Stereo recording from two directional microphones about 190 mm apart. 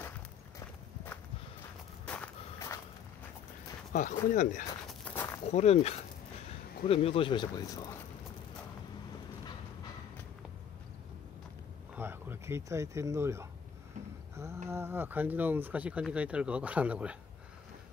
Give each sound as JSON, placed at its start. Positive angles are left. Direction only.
{"t": 0.6, "sound": "walk", "side_deg": 15}
{"t": 3.9, "sound": "speech", "side_deg": 40}
{"t": 4.8, "sound": "walk", "side_deg": 10}
{"t": 5.5, "sound": "speech", "side_deg": 35}
{"t": 11.9, "sound": "speech", "side_deg": -10}